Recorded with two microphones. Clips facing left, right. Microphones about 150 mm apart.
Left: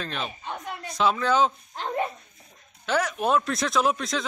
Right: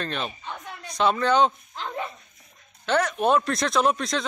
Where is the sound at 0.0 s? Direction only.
Centre (ahead or behind).